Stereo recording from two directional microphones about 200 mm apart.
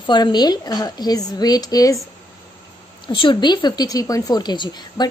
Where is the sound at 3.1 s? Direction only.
25° left (ahead or behind).